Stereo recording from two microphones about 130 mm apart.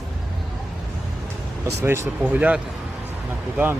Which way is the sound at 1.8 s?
20° right (ahead or behind).